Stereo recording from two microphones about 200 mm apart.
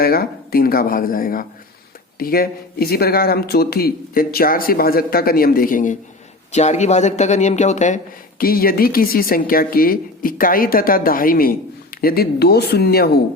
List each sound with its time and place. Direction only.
0.0 s a man's voice: 50° left (ahead or behind)